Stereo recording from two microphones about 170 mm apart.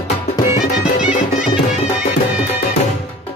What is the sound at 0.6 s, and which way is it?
Music, 5° right (ahead or behind).